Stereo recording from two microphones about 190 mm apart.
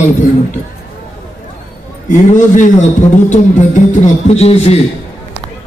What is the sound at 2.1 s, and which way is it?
A man's voice, 40° left (ahead or behind).